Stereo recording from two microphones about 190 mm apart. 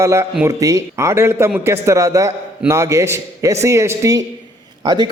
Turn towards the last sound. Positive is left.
turn(degrees=-20)  # may be behind; listen again after turning